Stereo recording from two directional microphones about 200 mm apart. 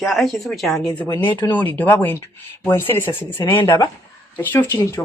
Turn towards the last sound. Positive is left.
turn(degrees=10)  # may be behind; listen again after turning